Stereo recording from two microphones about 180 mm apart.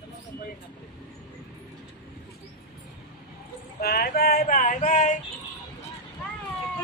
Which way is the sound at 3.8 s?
60° left (ahead or behind).